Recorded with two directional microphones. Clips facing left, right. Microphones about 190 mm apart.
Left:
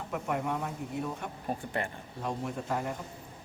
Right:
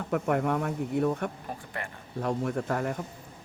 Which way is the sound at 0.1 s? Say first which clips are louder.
Right 6 dB; 55° right (ahead or behind).